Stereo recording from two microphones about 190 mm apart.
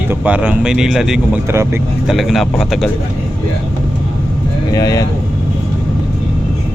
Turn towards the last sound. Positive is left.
turn(degrees=20)  # may be behind; listen again after turning